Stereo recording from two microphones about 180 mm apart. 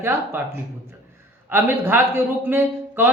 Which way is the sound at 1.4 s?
10° right (ahead or behind).